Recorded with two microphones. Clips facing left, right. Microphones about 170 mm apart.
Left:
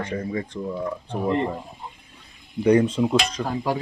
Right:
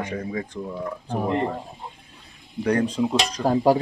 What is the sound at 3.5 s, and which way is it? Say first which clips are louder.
Speech: right 10 dB; 35° right (ahead or behind).